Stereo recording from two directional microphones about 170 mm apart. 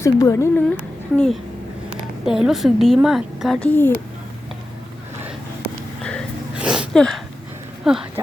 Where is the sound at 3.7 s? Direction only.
10° left (ahead or behind).